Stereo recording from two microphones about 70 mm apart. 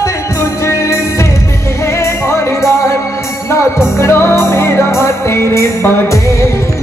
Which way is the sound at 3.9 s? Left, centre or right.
Left.